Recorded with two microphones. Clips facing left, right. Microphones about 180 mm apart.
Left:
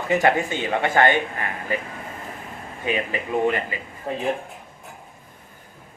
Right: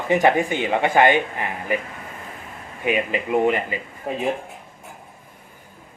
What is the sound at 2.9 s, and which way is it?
A man's voice, 15° right (ahead or behind).